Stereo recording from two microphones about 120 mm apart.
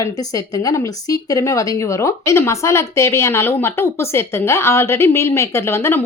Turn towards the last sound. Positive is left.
turn(degrees=20)  # may be behind; listen again after turning